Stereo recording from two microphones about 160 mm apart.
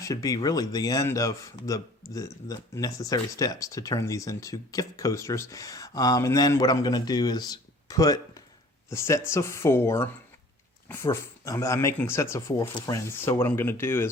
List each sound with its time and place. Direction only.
0.0 s speech: 20° left (ahead or behind)